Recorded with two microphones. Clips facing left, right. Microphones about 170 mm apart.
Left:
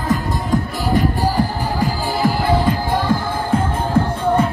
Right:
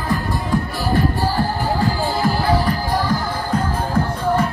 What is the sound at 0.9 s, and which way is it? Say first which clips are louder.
Music: left 2 dB; 15° left (ahead or behind).